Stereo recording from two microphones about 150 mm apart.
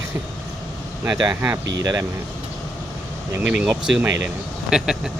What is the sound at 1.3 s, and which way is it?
Speech, 15° right (ahead or behind).